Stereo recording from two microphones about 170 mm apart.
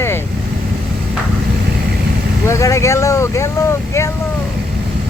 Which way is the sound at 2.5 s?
15° left (ahead or behind).